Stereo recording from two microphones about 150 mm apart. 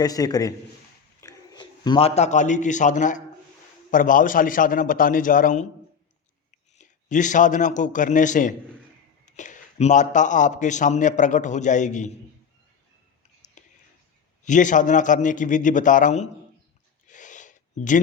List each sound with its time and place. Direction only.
0.0 s a man's voice: 25° left (ahead or behind); by 12.1 s 55° left (ahead or behind)
13.4 s whispering: 55° left (ahead or behind)
14.4 s a man's voice: 55° left (ahead or behind)
17.1 s a sound: 55° left (ahead or behind)